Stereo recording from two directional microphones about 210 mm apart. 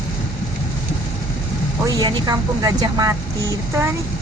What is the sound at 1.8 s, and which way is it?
Speech, 20° right (ahead or behind).